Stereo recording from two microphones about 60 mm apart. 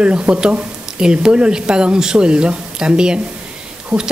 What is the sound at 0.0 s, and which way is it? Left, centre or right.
Speech, centre.